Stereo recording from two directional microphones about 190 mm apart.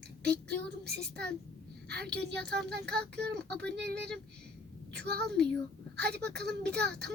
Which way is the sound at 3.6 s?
60° right (ahead or behind).